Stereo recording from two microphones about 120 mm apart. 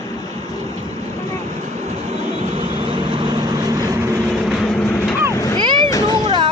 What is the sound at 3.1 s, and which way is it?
Vehicle, 40° right (ahead or behind).